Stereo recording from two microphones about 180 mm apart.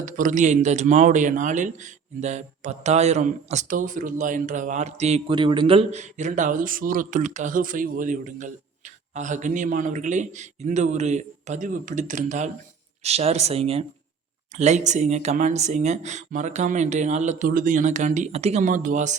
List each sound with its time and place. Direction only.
0.0 s speech: 45° right (ahead or behind)